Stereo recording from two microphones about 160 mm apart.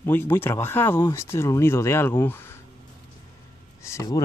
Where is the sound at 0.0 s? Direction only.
15° left (ahead or behind).